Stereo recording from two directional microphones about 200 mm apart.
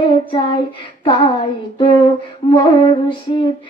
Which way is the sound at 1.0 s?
25° left (ahead or behind).